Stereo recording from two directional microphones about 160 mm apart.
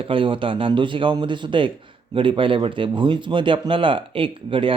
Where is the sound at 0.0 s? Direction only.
35° right (ahead or behind).